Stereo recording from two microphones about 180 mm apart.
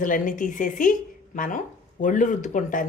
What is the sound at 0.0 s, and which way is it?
A woman's voice, 45° left (ahead or behind).